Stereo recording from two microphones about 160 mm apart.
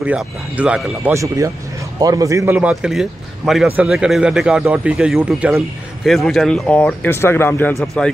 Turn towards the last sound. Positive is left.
turn(degrees=15)  # may be behind; listen again after turning